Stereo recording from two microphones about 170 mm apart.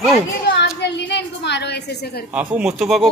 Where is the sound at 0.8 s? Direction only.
90° left; by 2.2 s 75° left (ahead or behind).